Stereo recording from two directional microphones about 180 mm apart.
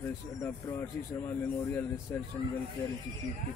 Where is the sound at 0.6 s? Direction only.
15° left (ahead or behind).